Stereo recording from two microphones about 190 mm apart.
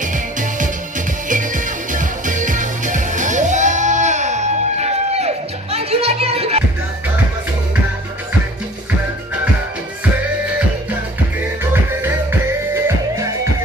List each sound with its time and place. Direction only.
0.0 s music: 45° right (ahead or behind)
11.7 s music: 10° right (ahead or behind)